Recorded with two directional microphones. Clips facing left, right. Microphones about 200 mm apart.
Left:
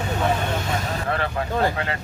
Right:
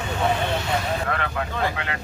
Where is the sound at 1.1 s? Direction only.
35° left (ahead or behind).